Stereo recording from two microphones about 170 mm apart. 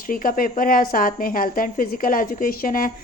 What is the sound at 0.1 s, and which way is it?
A woman's voice, 55° left (ahead or behind).